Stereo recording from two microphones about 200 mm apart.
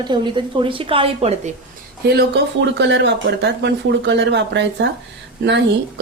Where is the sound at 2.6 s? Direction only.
60° right (ahead or behind).